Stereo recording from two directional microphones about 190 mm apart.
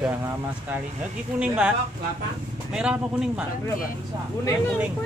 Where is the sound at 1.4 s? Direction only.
5° right (ahead or behind).